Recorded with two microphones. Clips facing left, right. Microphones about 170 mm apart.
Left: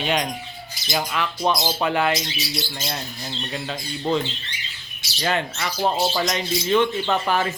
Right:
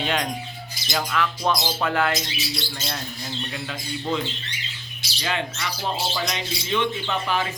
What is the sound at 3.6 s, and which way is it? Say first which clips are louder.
Speech: left 5 dB; 30° left (ahead or behind).